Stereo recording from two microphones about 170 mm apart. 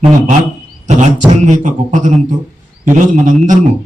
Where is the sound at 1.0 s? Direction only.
45° right (ahead or behind).